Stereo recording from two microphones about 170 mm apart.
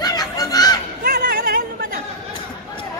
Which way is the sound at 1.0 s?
60° right (ahead or behind).